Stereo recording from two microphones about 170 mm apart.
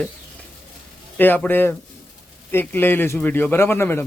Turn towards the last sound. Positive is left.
turn(degrees=10)  # may be behind; listen again after turning